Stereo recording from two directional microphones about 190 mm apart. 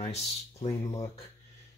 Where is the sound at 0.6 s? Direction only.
15° left (ahead or behind).